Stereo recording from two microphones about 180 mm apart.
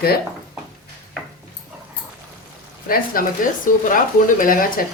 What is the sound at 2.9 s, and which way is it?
Speech, 50° left (ahead or behind).